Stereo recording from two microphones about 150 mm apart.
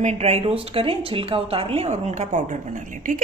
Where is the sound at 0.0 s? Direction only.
50° right (ahead or behind).